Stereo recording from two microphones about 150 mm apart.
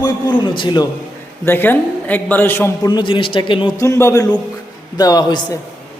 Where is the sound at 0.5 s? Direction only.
30° left (ahead or behind).